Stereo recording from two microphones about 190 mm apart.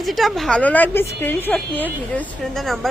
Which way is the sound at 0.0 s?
Centre (ahead or behind).